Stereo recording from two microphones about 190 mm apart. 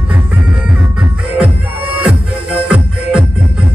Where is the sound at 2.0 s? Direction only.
5° right (ahead or behind).